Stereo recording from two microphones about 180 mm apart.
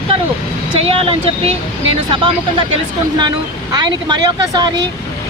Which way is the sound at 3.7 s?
20° right (ahead or behind).